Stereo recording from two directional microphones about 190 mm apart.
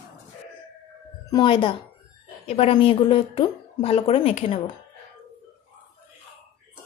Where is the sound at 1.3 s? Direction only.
25° left (ahead or behind).